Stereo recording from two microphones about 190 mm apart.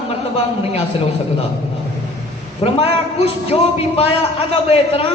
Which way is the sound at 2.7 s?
30° left (ahead or behind).